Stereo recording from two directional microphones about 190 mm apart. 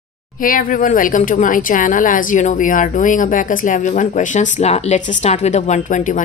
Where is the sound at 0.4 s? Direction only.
45° left (ahead or behind).